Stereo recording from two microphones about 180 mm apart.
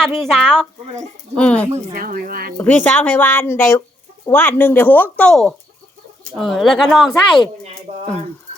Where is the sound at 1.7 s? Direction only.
50° right (ahead or behind).